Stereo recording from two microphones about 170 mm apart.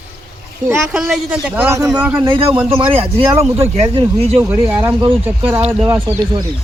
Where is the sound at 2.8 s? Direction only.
35° right (ahead or behind).